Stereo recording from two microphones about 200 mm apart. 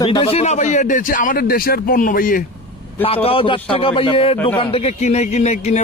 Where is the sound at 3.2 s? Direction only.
25° left (ahead or behind).